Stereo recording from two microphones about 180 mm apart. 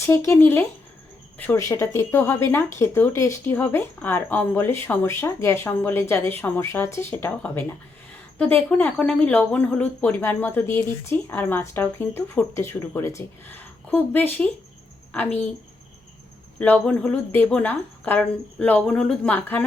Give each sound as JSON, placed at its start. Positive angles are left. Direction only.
{"t": 0.0, "sound": "a woman's voice", "side_deg": 15}
{"t": 16.6, "sound": "speech", "side_deg": 5}